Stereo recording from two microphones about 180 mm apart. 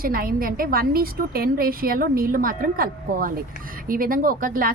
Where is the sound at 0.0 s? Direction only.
55° right (ahead or behind).